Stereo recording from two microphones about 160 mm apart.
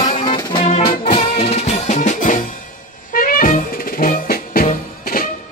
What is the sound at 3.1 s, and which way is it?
Music, 60° left (ahead or behind).